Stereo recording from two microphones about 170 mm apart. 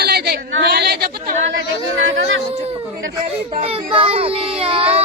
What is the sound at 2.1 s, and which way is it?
Speech, 90° right.